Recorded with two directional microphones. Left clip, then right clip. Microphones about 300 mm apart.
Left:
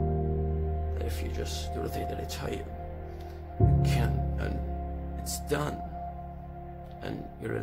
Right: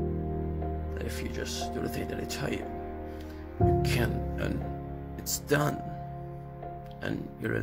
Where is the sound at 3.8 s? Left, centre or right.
Centre.